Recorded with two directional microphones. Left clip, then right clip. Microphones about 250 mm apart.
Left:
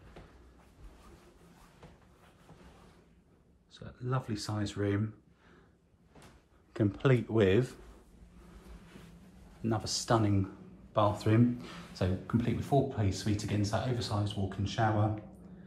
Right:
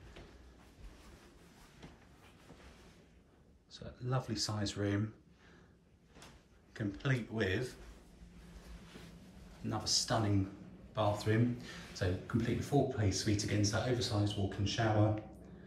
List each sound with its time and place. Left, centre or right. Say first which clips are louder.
3.7 s speech: left 2 dB; centre
6.7 s speech: left 9 dB; centre
9.7 s speech: left 4 dB; left; by 14.9 s centre